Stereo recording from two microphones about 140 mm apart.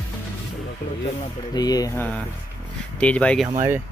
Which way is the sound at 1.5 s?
25° left (ahead or behind).